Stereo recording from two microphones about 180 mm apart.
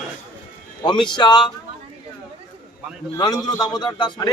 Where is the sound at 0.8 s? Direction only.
25° left (ahead or behind).